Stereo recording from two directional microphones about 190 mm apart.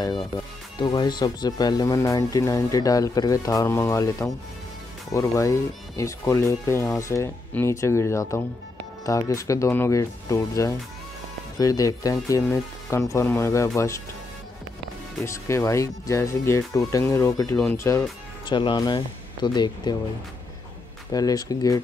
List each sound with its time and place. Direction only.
0.7 s speech: 20° left (ahead or behind)
15.2 s speech: 15° left (ahead or behind)
21.1 s speech: 20° left (ahead or behind)